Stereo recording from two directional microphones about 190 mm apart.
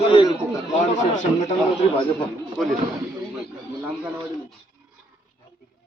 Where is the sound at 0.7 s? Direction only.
40° left (ahead or behind).